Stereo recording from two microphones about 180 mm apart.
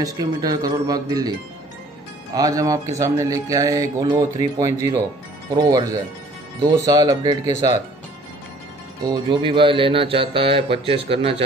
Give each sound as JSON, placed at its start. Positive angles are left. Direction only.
{"t": 0.0, "sound": "speech", "side_deg": -20}
{"t": 2.3, "sound": "speech", "side_deg": -20}
{"t": 9.0, "sound": "speech", "side_deg": -25}